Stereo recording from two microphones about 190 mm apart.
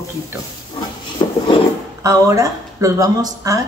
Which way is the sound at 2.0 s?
15° right (ahead or behind).